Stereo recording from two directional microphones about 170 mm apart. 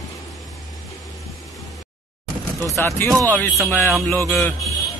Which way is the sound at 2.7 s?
15° left (ahead or behind).